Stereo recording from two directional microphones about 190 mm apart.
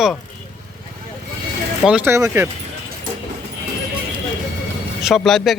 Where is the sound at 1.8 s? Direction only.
10° right (ahead or behind).